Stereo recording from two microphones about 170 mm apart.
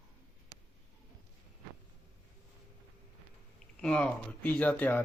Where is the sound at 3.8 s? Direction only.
5° left (ahead or behind).